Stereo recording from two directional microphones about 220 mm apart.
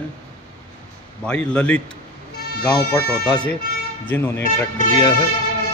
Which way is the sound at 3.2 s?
5° left (ahead or behind).